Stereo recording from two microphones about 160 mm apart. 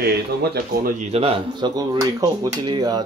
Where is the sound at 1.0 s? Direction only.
40° right (ahead or behind).